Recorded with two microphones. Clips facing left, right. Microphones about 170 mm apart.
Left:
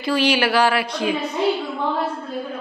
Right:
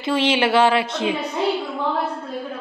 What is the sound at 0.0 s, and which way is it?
Speech, 25° right (ahead or behind).